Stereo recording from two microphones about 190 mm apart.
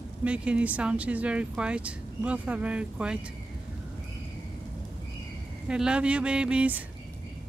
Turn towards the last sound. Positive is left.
turn(degrees=-5)  # may be behind; listen again after turning